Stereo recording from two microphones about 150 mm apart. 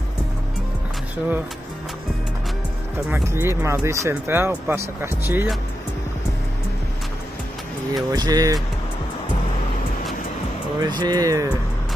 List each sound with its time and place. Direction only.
3.1 s speech: 15° right (ahead or behind)
7.9 s speech: 25° right (ahead or behind)
10.8 s speech: 30° right (ahead or behind)